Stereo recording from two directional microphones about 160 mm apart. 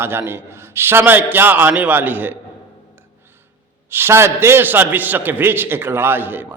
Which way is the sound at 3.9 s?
15° right (ahead or behind).